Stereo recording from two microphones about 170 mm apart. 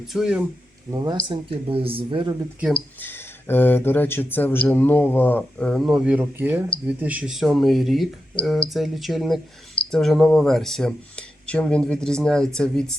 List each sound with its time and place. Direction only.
0.1 s speech: 5° right (ahead or behind)
0.9 s speech: 25° right (ahead or behind)
3.0 s speech: 10° left (ahead or behind)